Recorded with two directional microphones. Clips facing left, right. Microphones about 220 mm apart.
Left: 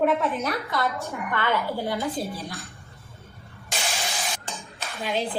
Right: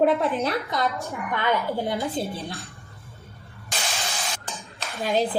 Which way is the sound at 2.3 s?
25° right (ahead or behind).